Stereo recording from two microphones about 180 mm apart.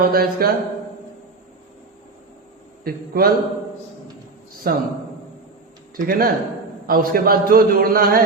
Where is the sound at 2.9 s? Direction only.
55° right (ahead or behind).